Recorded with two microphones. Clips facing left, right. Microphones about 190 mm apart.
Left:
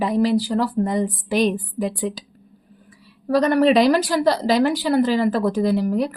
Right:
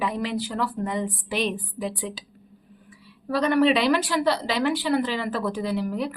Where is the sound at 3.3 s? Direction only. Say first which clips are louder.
Left 5 dB; 40° left (ahead or behind).